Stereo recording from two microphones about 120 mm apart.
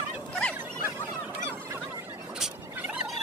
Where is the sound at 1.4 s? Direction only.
25° right (ahead or behind).